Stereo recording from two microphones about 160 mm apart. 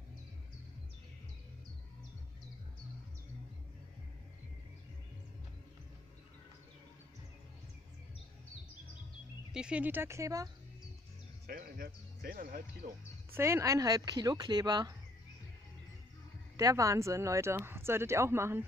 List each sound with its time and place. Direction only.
9.5 s speech: 5° right (ahead or behind)
11.4 s music: 70° right (ahead or behind)
13.3 s speech: 15° right (ahead or behind)
16.5 s speech: 20° right (ahead or behind)